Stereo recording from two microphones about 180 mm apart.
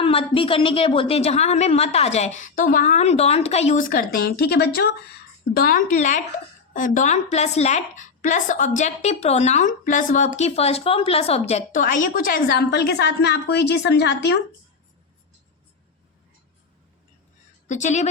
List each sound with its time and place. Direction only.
0.0 s a woman's voice: 30° left (ahead or behind); by 4.9 s 65° left (ahead or behind)
5.5 s a woman's voice: 55° left (ahead or behind); by 14.3 s 70° left (ahead or behind)
17.7 s a woman's voice: 40° left (ahead or behind)